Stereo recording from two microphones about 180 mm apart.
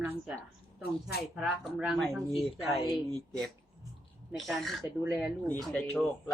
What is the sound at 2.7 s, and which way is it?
Speech, 25° left (ahead or behind).